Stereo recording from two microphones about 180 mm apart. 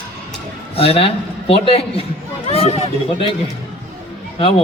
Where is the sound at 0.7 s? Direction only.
30° left (ahead or behind).